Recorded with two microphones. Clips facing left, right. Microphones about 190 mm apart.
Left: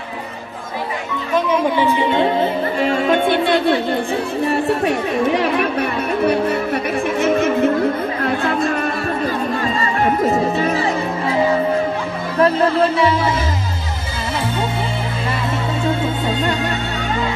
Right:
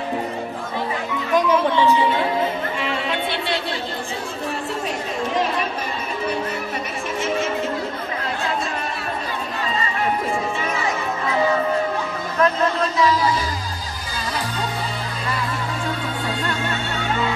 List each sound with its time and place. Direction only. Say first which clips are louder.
2.0 s music: left 4 dB; 20° left (ahead or behind)
2.8 s a sound: left 12 dB; 45° left (ahead or behind)
4.5 s chatter: left 9 dB; 65° left (ahead or behind)
7.2 s music: left 6 dB; 55° left (ahead or behind)
8.2 s chatter: left 5 dB; 55° left (ahead or behind)
9.8 s music: left 4 dB; 45° left (ahead or behind)
12.4 s music: left 5 dB; 30° left (ahead or behind)
15.8 s music: left 7 dB; 25° left (ahead or behind)